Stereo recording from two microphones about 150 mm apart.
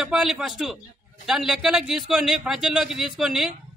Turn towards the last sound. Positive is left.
turn(degrees=0)  # may be behind; listen again after turning